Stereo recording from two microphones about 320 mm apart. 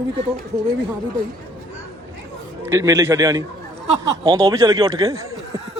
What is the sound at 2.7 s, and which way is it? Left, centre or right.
Speech, centre.